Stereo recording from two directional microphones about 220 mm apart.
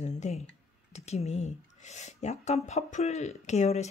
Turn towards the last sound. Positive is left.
turn(degrees=30)  # may be behind; listen again after turning